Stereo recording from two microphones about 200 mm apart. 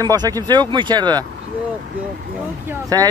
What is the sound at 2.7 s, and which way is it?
Speech, 20° right (ahead or behind).